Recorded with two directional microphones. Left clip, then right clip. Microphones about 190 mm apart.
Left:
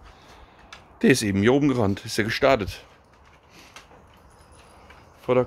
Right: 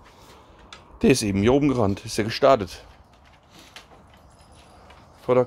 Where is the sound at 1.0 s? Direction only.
5° left (ahead or behind).